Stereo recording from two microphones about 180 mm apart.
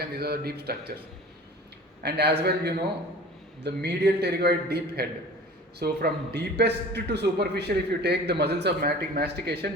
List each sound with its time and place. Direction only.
0.2 s a man's voice: 60° right (ahead or behind)
2.0 s a man's voice: 65° right (ahead or behind)